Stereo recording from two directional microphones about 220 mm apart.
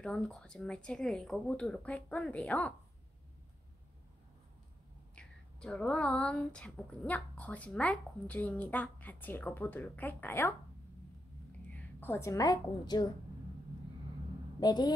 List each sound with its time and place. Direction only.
0.0 s speech: 5° left (ahead or behind)
5.1 s a woman's voice: 5° left (ahead or behind)
11.7 s a woman's voice: 10° left (ahead or behind)
14.6 s a woman's voice: 20° left (ahead or behind)